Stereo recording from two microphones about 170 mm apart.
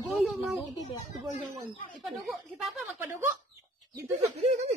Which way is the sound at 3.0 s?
15° right (ahead or behind).